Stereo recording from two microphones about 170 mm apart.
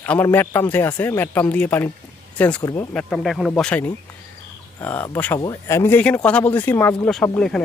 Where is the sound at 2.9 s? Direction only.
5° left (ahead or behind).